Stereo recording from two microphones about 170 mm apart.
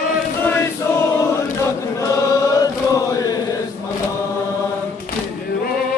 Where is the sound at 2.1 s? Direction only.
20° left (ahead or behind).